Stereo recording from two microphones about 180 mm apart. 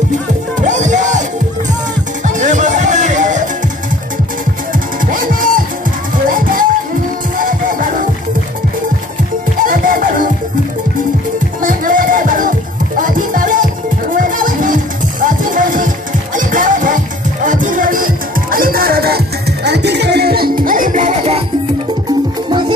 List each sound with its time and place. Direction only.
0.6 s music: 45° right (ahead or behind)
2.2 s music: 45° right (ahead or behind)
5.1 s music: 50° right (ahead or behind)
7.3 s music: 50° right (ahead or behind)
9.6 s music: 50° right (ahead or behind)
11.6 s music: 50° right (ahead or behind)